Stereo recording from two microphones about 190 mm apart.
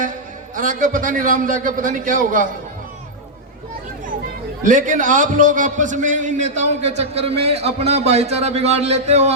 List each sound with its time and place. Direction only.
0.5 s a man's voice: 45° right (ahead or behind)
4.6 s a man's voice: 45° right (ahead or behind)